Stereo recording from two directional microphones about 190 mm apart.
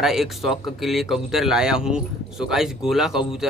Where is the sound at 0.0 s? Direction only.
Centre (ahead or behind).